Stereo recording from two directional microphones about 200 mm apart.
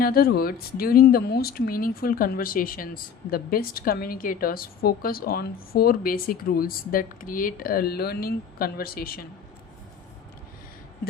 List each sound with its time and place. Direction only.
0.0 s speech: 50° left (ahead or behind)